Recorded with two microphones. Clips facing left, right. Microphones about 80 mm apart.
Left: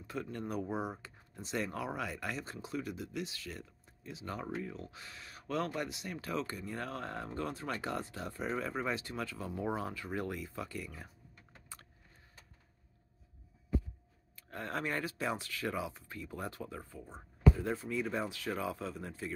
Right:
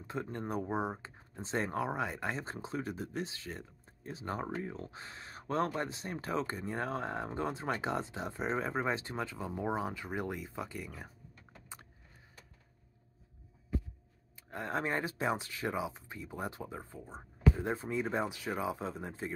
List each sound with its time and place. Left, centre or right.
0.0 s speech: right
14.5 s speech: right